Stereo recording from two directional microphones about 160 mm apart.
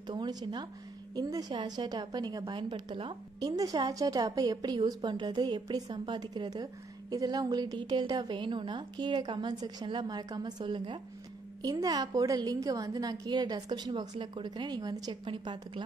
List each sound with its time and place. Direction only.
0.0 s a woman's voice: 25° right (ahead or behind)